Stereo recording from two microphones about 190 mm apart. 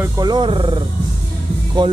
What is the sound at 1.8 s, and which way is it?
Speech, 25° right (ahead or behind).